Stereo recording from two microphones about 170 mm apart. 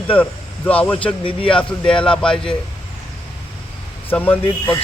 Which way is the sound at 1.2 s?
30° left (ahead or behind).